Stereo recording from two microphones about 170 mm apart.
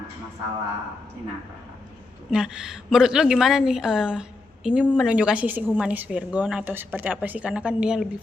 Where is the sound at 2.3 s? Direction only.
5° right (ahead or behind).